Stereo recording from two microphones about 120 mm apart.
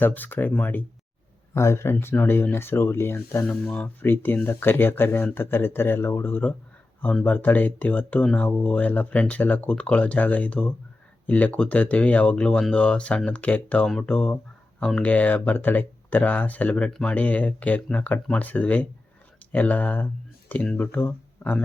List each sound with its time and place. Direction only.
0.0 s speech: 15° left (ahead or behind)